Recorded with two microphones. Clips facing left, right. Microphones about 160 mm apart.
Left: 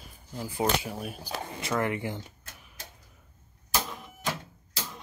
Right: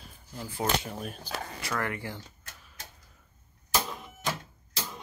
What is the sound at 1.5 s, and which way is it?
Speech, 20° left (ahead or behind).